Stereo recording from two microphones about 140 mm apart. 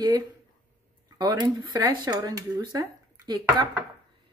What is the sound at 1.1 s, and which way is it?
Speech, 30° right (ahead or behind).